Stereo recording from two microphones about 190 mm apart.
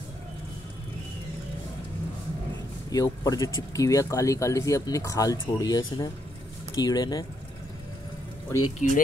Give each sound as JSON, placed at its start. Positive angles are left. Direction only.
{"t": 2.9, "sound": "speech", "side_deg": 20}
{"t": 8.8, "sound": "speech", "side_deg": 40}